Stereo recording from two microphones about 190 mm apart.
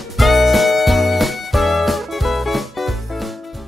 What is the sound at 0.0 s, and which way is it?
Music, centre (ahead or behind).